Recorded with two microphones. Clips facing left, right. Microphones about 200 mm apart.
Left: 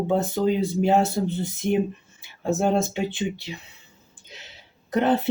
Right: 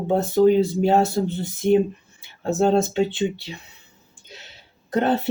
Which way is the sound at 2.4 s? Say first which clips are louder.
Right 3 dB; 15° left (ahead or behind).